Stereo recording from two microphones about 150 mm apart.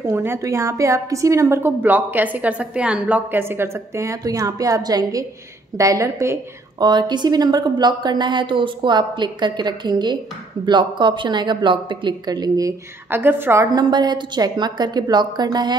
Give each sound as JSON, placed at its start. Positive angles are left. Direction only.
{"t": 0.0, "sound": "a woman's voice", "side_deg": -15}
{"t": 13.7, "sound": "a woman's voice", "side_deg": -30}